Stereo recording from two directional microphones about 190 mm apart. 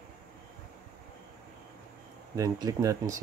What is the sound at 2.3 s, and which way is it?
Speech, 20° right (ahead or behind).